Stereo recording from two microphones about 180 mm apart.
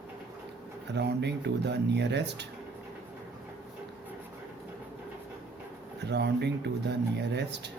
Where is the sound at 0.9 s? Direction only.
70° right (ahead or behind).